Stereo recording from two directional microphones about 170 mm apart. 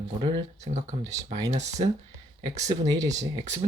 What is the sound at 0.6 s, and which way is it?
Speech, 45° right (ahead or behind).